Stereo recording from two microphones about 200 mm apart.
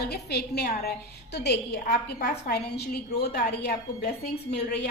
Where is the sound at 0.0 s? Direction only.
55° left (ahead or behind).